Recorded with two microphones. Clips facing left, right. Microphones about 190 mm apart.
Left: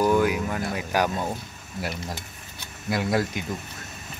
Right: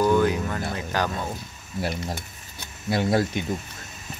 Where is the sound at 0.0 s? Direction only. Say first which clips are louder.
Right 1 dB; 10° left (ahead or behind).